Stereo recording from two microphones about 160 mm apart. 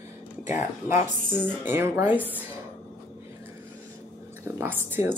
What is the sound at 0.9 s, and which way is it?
Speech, 15° right (ahead or behind).